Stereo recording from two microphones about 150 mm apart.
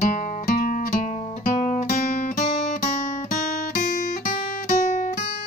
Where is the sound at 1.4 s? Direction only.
60° left (ahead or behind).